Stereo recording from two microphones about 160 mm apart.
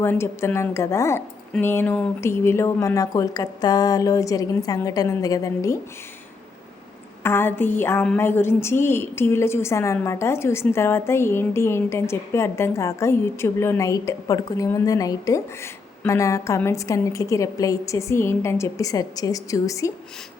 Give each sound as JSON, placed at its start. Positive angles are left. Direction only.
{"t": 0.0, "sound": "a woman's voice", "side_deg": 15}
{"t": 7.2, "sound": "a woman's voice", "side_deg": 15}